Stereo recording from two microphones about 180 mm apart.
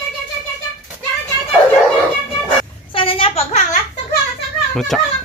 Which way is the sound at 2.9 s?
30° left (ahead or behind).